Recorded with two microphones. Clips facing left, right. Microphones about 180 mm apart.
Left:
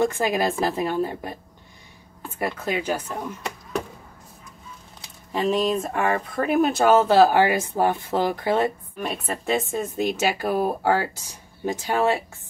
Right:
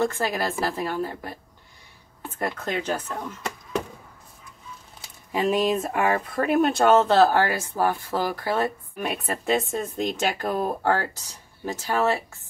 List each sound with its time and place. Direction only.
0.0 s speech: 15° left (ahead or behind)
2.3 s speech: 10° left (ahead or behind)
5.0 s speech: 5° right (ahead or behind); by 8.7 s 20° left (ahead or behind)
8.9 s speech: centre (ahead or behind); by 12.2 s 15° left (ahead or behind)